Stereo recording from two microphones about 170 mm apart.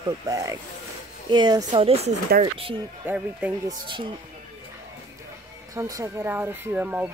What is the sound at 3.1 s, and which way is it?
Speech, 10° right (ahead or behind).